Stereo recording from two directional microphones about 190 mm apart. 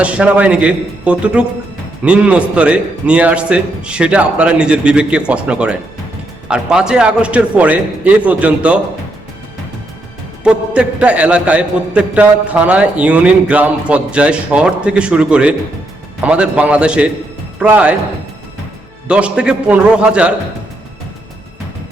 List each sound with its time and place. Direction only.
0.0 s a man's voice: 5° right (ahead or behind)
10.4 s a man's voice: 5° right (ahead or behind)
19.0 s a man's voice: 5° right (ahead or behind)